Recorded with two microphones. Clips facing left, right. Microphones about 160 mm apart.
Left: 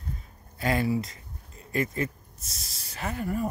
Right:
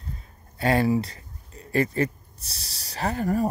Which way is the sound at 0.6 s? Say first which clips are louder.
Right 5 dB; 30° right (ahead or behind).